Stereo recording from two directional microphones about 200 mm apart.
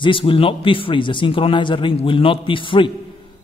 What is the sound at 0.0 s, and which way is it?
A man's voice, 25° left (ahead or behind).